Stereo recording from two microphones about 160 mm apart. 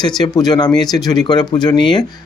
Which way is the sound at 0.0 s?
25° left (ahead or behind).